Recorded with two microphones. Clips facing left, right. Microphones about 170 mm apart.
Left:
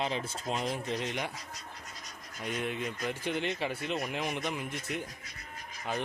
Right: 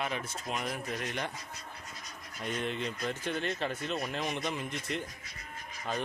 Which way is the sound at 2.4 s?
10° left (ahead or behind).